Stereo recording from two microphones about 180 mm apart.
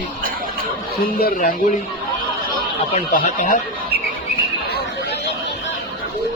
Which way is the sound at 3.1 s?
50° left (ahead or behind).